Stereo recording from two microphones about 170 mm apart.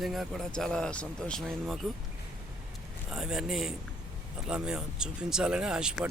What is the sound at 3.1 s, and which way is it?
Speech, 5° right (ahead or behind).